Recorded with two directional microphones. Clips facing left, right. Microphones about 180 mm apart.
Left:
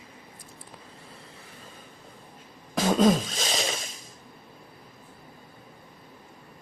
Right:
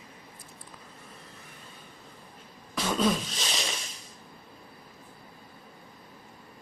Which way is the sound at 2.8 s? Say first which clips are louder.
Left 6 dB; 45° left (ahead or behind).